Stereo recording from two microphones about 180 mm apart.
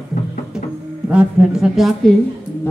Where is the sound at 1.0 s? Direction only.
5° right (ahead or behind).